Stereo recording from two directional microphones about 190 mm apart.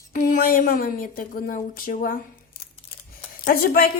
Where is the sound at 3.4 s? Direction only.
50° left (ahead or behind).